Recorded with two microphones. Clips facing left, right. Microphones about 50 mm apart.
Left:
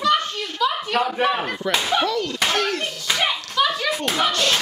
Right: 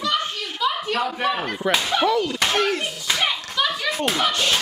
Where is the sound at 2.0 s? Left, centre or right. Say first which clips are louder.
Right 2 dB; centre.